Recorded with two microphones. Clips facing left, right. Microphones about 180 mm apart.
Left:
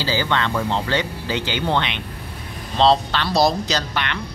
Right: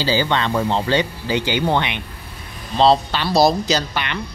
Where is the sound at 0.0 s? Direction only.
15° right (ahead or behind).